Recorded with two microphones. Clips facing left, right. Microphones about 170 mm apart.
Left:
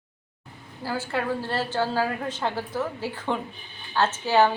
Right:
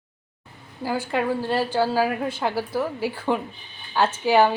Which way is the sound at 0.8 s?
15° right (ahead or behind).